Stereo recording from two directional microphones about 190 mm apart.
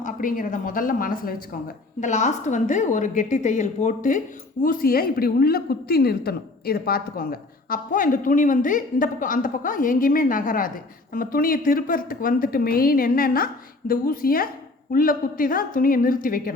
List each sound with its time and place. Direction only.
0.0 s a woman's voice: 45° left (ahead or behind)